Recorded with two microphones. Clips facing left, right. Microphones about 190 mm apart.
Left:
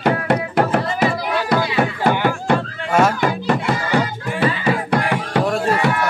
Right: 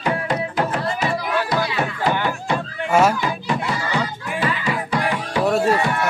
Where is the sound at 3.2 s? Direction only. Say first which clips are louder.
Left 5 dB; 60° left (ahead or behind).